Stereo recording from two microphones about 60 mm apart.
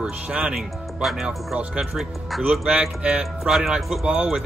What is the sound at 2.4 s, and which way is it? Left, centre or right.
Speech, centre.